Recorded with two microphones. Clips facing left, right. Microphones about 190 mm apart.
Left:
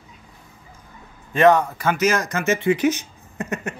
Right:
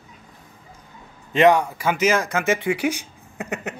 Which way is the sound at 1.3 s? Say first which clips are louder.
Left 1 dB; 15° right (ahead or behind).